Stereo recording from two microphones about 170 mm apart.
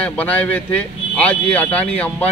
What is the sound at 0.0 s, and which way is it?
A man's voice, 10° left (ahead or behind).